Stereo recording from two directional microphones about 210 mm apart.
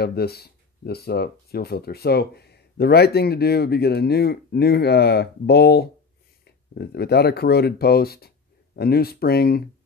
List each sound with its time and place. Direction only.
0.0 s speech: 50° left (ahead or behind)